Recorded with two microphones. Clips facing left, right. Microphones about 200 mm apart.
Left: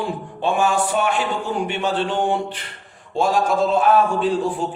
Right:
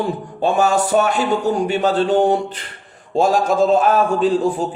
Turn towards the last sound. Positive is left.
turn(degrees=-40)  # may be behind; listen again after turning